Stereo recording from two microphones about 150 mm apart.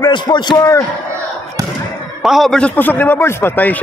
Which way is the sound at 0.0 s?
30° left (ahead or behind).